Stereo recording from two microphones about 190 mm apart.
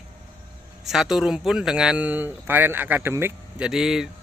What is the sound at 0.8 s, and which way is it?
Speech, centre (ahead or behind).